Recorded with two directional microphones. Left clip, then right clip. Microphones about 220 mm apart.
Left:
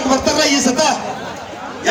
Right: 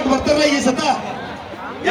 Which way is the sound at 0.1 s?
50° left (ahead or behind).